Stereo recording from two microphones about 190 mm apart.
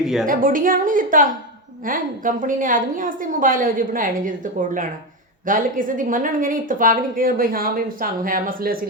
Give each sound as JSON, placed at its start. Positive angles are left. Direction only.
{"t": 0.3, "sound": "speech", "side_deg": -45}